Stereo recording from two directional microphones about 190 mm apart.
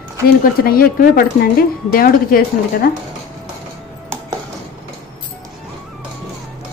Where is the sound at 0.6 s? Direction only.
50° left (ahead or behind).